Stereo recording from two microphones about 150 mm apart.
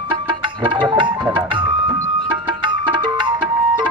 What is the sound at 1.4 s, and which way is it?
Speech, 30° right (ahead or behind).